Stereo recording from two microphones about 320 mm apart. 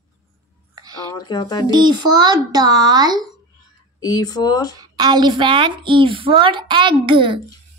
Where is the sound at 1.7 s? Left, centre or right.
Centre.